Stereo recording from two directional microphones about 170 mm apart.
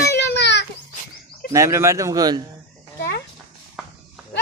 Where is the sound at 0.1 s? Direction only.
85° left.